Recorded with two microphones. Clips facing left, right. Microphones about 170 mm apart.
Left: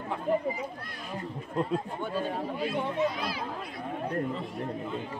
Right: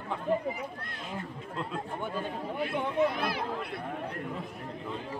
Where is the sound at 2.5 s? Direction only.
60° right (ahead or behind).